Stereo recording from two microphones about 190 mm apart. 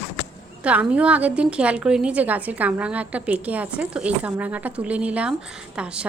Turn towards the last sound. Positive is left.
turn(degrees=-5)  # may be behind; listen again after turning